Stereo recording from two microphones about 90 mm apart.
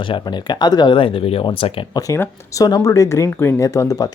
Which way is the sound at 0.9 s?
85° left.